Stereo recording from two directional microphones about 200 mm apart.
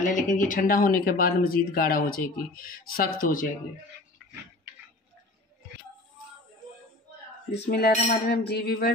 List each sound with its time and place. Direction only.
0.0 s speech: 40° left (ahead or behind)
7.7 s speech: 50° left (ahead or behind)